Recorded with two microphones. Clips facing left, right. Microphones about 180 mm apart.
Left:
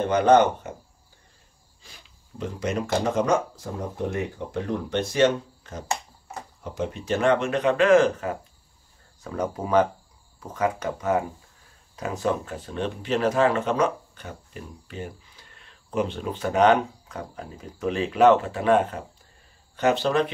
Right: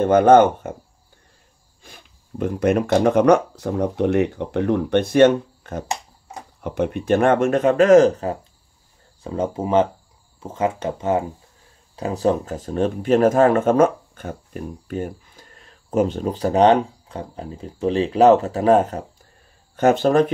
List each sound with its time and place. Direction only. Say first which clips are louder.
0.0 s speech: right 6 dB; 50° right (ahead or behind)
1.8 s speech: right 6 dB; 55° right (ahead or behind); by 8.4 s 35° right (ahead or behind)
9.2 s speech: right 5 dB; 25° right (ahead or behind); by 20.3 s 45° right (ahead or behind)